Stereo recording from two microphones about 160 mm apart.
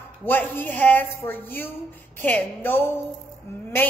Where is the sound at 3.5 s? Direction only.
15° left (ahead or behind).